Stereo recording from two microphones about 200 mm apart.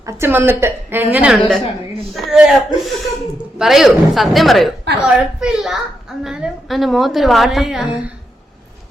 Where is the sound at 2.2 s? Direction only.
Centre (ahead or behind).